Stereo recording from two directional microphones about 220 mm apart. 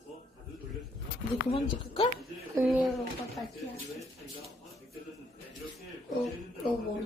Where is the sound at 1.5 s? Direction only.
25° left (ahead or behind).